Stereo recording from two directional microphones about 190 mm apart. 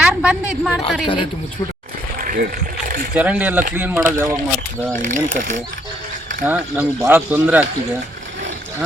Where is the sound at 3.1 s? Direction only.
5° right (ahead or behind).